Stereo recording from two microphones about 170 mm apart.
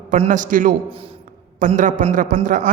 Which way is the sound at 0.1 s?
50° right (ahead or behind).